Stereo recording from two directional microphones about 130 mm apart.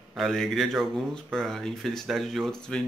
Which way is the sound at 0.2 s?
Centre (ahead or behind).